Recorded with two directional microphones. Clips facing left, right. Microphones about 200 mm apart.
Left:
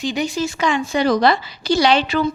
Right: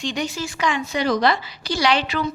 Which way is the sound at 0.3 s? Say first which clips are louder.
Left 4 dB; 25° left (ahead or behind).